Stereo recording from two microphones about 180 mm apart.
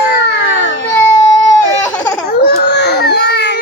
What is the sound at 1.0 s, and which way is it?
Baby cry, 15° left (ahead or behind).